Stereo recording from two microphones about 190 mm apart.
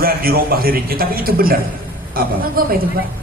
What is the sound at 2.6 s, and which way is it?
Speech, 50° right (ahead or behind).